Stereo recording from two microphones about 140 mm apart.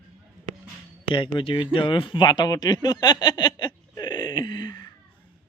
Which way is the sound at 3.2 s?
30° left (ahead or behind).